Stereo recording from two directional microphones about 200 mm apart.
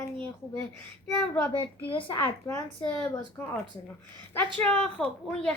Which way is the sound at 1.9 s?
25° left (ahead or behind).